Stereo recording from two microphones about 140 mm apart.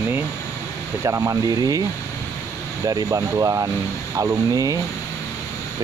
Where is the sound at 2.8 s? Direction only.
25° right (ahead or behind).